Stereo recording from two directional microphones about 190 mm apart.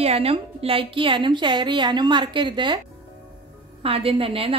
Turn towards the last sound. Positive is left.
turn(degrees=-30)  # may be behind; listen again after turning